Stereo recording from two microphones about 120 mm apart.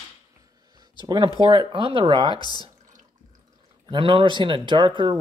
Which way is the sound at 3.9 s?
45° right (ahead or behind).